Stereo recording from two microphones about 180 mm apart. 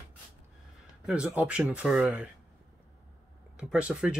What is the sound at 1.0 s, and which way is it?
Speech, 5° right (ahead or behind).